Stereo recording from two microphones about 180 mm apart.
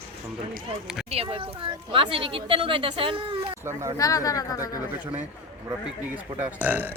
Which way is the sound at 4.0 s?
20° left (ahead or behind).